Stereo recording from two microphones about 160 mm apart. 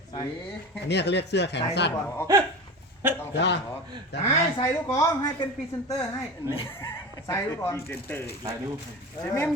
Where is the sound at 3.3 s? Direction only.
90° left.